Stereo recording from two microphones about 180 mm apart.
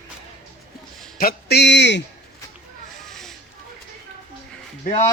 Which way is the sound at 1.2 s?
60° left (ahead or behind).